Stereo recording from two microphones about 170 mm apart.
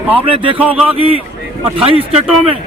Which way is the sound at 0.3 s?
30° right (ahead or behind).